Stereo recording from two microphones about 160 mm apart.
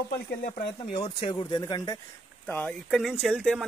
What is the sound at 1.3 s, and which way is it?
Speech, 20° left (ahead or behind).